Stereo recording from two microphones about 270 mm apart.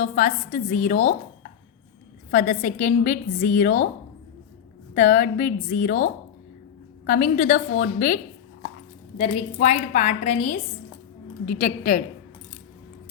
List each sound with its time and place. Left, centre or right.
0.0 s a woman's voice: left
2.3 s a woman's voice: left
4.9 s a woman's voice: left